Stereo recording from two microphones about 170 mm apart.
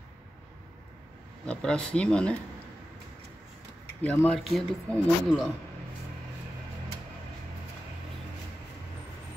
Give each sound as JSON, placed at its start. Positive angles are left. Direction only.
{"t": 1.4, "sound": "speech", "side_deg": 5}
{"t": 4.0, "sound": "speech", "side_deg": 5}